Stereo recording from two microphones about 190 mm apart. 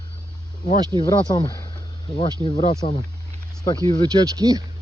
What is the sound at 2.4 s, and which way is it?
Speech, 35° left (ahead or behind).